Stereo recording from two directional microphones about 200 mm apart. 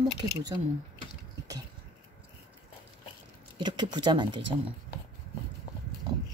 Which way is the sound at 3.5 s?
20° right (ahead or behind).